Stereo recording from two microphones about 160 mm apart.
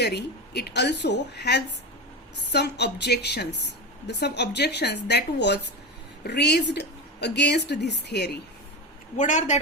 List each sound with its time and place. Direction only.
0.0 s a woman's voice: 90° left
9.1 s a woman's voice: 50° left (ahead or behind)